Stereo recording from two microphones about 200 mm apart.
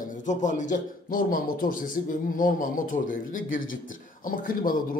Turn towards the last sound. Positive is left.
turn(degrees=45)  # may be behind; listen again after turning